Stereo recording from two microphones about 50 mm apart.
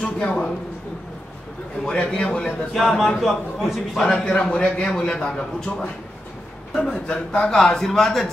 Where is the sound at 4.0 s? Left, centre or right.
Centre.